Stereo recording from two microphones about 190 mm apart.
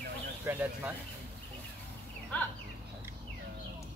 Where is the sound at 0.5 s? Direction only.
10° right (ahead or behind).